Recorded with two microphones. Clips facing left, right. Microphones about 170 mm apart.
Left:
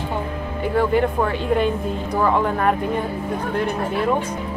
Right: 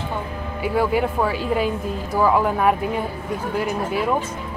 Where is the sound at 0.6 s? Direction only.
10° right (ahead or behind).